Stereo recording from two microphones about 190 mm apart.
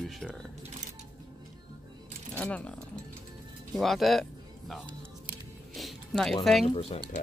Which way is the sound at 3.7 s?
Centre (ahead or behind).